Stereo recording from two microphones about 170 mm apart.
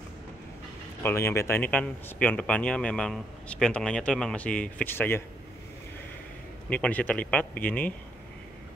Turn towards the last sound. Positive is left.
turn(degrees=10)  # may be behind; listen again after turning